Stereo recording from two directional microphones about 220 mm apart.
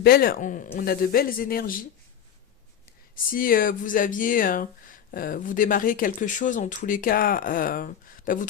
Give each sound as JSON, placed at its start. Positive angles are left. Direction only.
{"t": 0.0, "sound": "speech", "side_deg": 45}
{"t": 3.2, "sound": "speech", "side_deg": 40}